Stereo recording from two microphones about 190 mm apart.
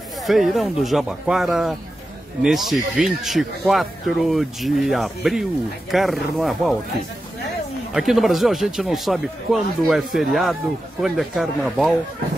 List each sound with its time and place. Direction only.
0.2 s speech: centre (ahead or behind)
7.9 s speech: centre (ahead or behind)